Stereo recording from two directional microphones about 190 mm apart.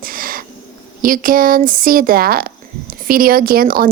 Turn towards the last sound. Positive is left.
turn(degrees=-50)  # may be behind; listen again after turning